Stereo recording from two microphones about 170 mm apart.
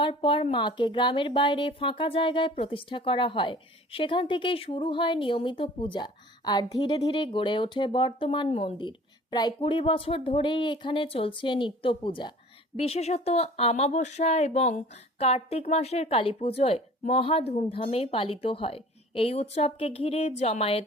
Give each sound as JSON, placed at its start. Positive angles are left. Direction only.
{"t": 0.0, "sound": "speech", "side_deg": 30}